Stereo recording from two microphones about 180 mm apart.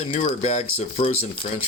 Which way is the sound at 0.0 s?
35° left (ahead or behind).